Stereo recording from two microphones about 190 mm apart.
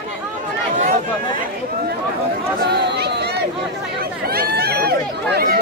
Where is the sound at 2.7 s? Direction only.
60° right (ahead or behind).